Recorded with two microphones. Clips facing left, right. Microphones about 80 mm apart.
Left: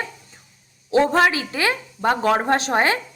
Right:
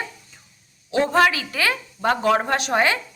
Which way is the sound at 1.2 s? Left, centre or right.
Left.